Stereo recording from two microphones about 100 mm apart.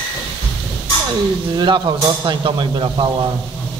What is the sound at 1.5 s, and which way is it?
Speech, 50° right (ahead or behind).